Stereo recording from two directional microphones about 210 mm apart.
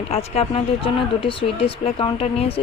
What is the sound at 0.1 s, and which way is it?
A woman's voice, 30° left (ahead or behind).